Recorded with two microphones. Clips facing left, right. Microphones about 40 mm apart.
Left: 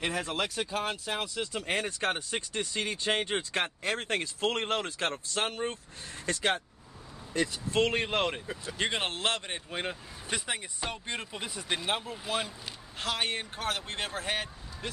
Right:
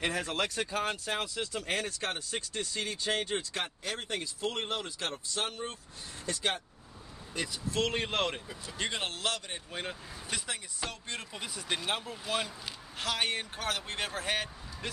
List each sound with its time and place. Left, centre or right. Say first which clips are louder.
0.0 s speech: even; centre
1.4 s speech: left 2 dB; left
4.0 s speech: left 2 dB; left
6.2 s a man's voice: left 4 dB; left
7.8 s speech: left 3 dB; centre
8.7 s a man's voice: left 3 dB; left
9.7 s speech: left 3 dB; left; by 14.9 s centre